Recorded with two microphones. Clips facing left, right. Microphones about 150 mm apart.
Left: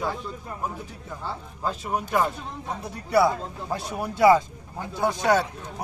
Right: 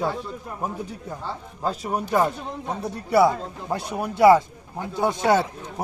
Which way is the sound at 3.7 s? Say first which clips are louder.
Right 3 dB; 20° right (ahead or behind).